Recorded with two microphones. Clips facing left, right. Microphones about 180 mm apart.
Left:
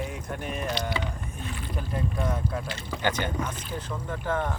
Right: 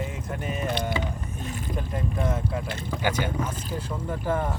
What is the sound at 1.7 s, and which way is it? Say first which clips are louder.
Speech: even; centre (ahead or behind).